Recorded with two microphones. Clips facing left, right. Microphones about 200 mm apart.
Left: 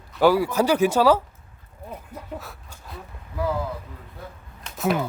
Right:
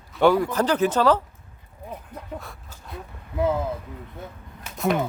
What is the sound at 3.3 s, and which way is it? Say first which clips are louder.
Speech: right 4 dB; 20° right (ahead or behind).